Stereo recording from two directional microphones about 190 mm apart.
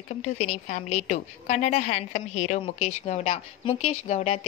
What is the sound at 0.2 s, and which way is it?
A woman's voice, 35° left (ahead or behind).